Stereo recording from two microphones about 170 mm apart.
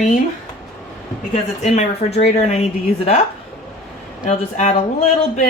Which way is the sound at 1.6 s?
40° left (ahead or behind).